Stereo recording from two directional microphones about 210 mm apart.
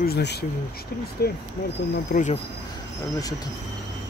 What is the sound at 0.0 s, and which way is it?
Speech, 50° left (ahead or behind).